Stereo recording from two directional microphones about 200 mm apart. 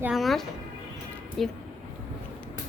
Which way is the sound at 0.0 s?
Centre (ahead or behind).